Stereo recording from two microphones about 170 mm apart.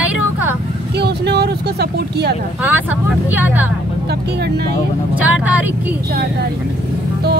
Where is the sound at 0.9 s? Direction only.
75° right (ahead or behind).